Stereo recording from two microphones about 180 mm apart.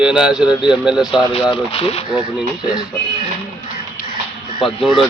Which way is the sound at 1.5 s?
35° left (ahead or behind).